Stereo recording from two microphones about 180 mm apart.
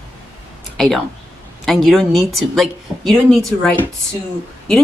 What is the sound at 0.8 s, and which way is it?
A woman's voice, centre (ahead or behind).